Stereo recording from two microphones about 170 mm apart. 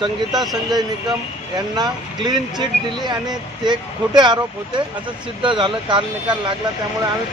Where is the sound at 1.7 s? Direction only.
25° right (ahead or behind).